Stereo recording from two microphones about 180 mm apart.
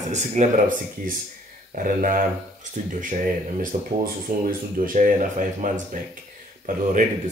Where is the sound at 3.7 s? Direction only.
40° right (ahead or behind).